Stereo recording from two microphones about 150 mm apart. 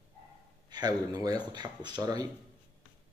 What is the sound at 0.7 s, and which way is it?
Speech, 25° right (ahead or behind).